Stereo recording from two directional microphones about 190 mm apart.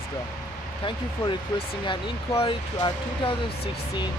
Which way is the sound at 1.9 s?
25° left (ahead or behind).